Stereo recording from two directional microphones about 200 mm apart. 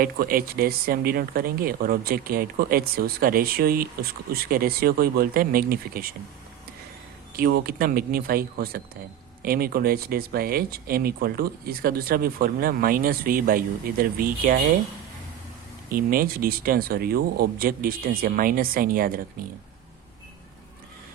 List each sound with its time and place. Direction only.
0.0 s speech: 45° right (ahead or behind)
7.3 s speech: 50° right (ahead or behind)
15.9 s speech: 45° right (ahead or behind)